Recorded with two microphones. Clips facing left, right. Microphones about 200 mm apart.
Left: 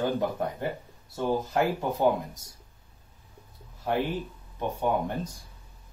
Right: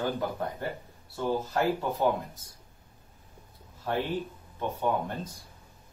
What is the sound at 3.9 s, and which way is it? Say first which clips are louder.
Speech: left 2 dB; 15° left (ahead or behind).